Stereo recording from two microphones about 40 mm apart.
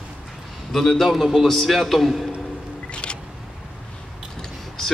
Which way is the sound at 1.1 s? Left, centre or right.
Centre.